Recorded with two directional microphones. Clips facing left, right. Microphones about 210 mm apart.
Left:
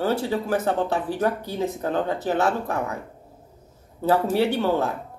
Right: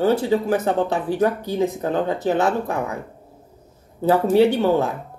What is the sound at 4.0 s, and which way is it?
Speech, 15° right (ahead or behind).